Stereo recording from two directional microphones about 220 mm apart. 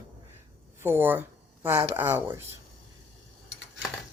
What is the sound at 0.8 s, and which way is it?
Speech, 10° right (ahead or behind).